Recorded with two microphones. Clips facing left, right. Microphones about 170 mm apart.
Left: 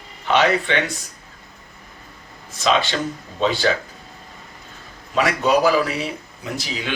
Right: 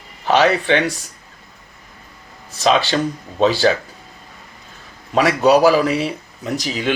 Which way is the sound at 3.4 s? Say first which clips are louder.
Right 5 dB; 35° right (ahead or behind).